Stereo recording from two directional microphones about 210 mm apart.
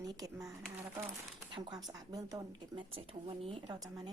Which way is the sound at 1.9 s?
15° right (ahead or behind).